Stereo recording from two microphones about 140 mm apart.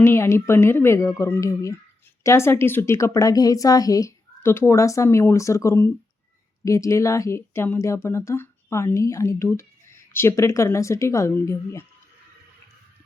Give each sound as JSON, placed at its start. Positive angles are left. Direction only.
{"t": 0.0, "sound": "speech", "side_deg": 20}